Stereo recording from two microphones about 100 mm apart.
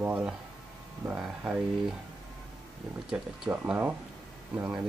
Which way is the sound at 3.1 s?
15° right (ahead or behind).